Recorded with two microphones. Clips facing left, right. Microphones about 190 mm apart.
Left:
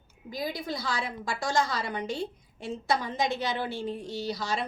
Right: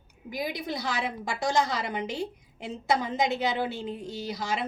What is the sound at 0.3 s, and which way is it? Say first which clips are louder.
A woman's voice: right 1 dB; 15° right (ahead or behind).